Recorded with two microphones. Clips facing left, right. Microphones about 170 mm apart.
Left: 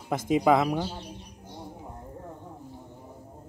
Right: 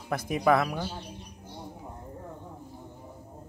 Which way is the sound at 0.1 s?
20° left (ahead or behind).